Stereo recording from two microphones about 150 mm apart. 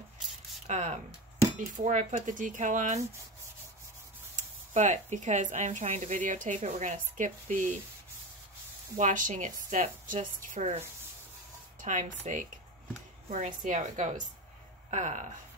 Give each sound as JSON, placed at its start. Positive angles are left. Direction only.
{"t": 0.7, "sound": "a woman's voice", "side_deg": -50}
{"t": 4.4, "sound": "speech", "side_deg": -55}
{"t": 8.9, "sound": "speech", "side_deg": -60}
{"t": 11.8, "sound": "a woman's voice", "side_deg": -55}